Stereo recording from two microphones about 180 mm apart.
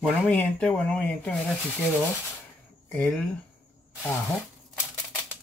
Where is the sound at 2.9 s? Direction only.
5° left (ahead or behind).